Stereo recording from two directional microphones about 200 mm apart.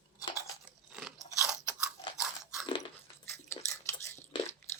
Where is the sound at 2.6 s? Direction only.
25° left (ahead or behind).